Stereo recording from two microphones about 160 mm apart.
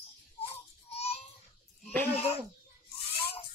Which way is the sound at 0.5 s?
40° left (ahead or behind).